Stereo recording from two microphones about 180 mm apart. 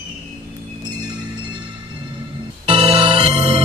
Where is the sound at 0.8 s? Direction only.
25° right (ahead or behind).